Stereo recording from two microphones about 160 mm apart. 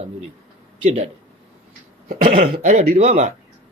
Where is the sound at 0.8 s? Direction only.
40° right (ahead or behind).